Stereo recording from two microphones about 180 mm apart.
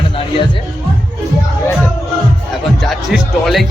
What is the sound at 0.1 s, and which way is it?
Music, 30° left (ahead or behind).